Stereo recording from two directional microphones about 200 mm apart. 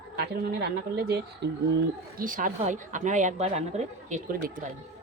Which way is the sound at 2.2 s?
40° right (ahead or behind).